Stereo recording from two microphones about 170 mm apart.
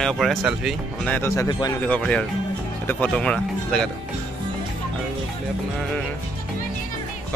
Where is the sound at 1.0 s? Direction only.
10° left (ahead or behind).